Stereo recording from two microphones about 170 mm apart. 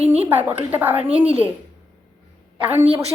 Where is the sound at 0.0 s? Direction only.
35° right (ahead or behind).